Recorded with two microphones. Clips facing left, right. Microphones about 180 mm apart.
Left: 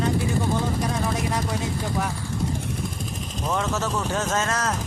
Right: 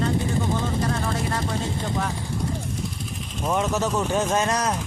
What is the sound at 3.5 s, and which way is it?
Speech, 15° right (ahead or behind).